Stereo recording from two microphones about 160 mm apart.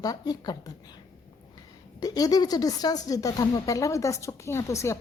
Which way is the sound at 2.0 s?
25° left (ahead or behind).